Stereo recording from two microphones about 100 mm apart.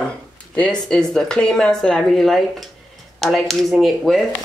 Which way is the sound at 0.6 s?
10° left (ahead or behind).